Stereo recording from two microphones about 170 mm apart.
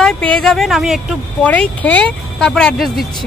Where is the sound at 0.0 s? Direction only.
5° left (ahead or behind).